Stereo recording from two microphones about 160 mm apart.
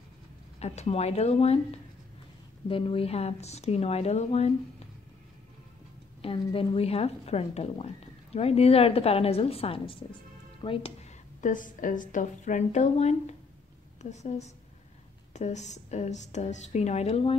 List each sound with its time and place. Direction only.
0.6 s speech: 40° left (ahead or behind)
6.2 s speech: 35° left (ahead or behind)
11.4 s a woman's voice: 55° left (ahead or behind); by 17.4 s 40° left (ahead or behind)